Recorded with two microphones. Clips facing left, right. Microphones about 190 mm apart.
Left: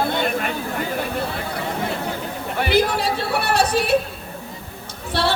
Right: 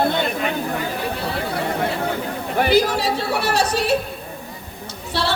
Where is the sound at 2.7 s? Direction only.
55° left (ahead or behind).